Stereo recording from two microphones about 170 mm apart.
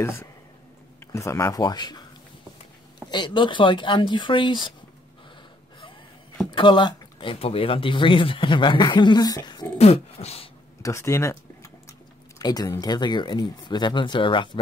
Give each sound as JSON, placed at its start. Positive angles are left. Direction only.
{"t": 0.0, "sound": "speech", "side_deg": 15}
{"t": 3.1, "sound": "speech", "side_deg": 25}
{"t": 6.5, "sound": "speech", "side_deg": 30}
{"t": 9.8, "sound": "a sound", "side_deg": 40}
{"t": 10.8, "sound": "speech", "side_deg": 15}